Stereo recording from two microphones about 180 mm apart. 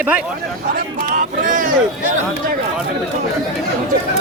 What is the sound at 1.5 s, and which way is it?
Speech, 45° right (ahead or behind).